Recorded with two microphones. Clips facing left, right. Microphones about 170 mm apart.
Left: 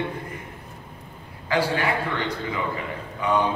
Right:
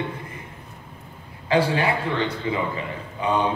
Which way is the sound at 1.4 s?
25° right (ahead or behind).